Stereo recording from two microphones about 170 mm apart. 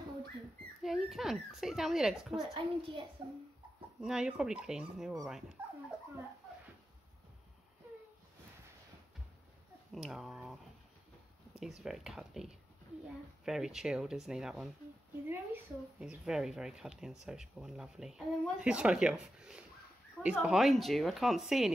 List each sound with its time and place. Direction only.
0.8 s speech: centre (ahead or behind)
2.5 s a child's voice: 30° right (ahead or behind)
4.0 s speech: 5° right (ahead or behind)
9.9 s speech: centre (ahead or behind)